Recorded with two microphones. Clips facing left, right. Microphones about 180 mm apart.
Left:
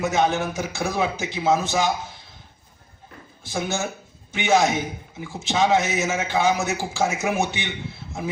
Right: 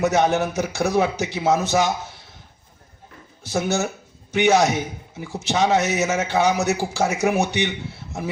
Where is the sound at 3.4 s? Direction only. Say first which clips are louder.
Right 4 dB; 40° right (ahead or behind).